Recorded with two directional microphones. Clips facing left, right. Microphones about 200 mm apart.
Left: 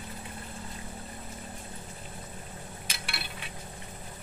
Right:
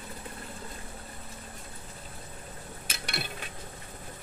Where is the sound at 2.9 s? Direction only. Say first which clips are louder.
Right 6 dB; 45° right (ahead or behind).